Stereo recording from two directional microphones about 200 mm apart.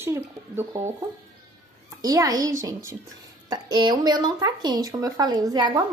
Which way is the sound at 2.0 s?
15° right (ahead or behind).